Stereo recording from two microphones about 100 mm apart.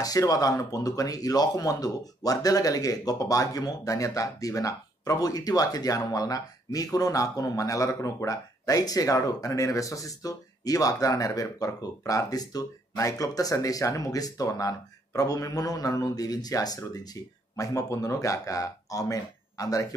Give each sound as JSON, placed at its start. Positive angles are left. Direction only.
{"t": 0.0, "sound": "speech", "side_deg": 40}